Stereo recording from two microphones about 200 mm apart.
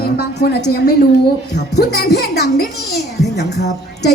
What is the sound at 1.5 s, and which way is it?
Music, 55° left (ahead or behind).